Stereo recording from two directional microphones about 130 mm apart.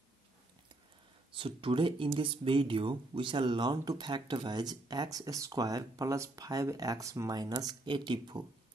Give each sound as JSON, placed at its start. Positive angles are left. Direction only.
{"t": 1.3, "sound": "speech", "side_deg": -45}